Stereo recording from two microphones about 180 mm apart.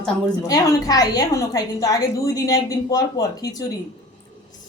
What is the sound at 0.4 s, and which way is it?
A woman's voice, 20° left (ahead or behind).